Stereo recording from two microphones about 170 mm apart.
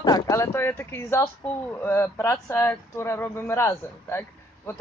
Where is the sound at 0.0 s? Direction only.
20° left (ahead or behind).